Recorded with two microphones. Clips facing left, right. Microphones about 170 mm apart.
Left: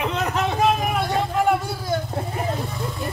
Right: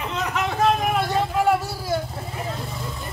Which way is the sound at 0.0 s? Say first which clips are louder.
Left 3 dB; 55° left (ahead or behind).